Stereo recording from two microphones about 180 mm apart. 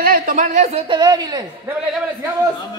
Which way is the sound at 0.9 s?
25° right (ahead or behind).